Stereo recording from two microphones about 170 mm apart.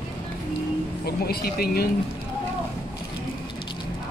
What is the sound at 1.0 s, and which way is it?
Speech, 65° left (ahead or behind).